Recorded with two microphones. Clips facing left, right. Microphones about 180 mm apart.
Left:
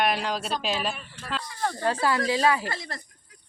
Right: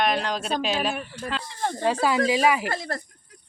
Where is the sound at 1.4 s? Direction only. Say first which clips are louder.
Even; 25° right (ahead or behind).